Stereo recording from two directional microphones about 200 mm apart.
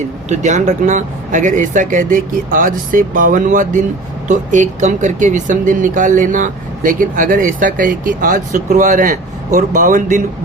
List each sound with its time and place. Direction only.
0.3 s speech: 35° right (ahead or behind)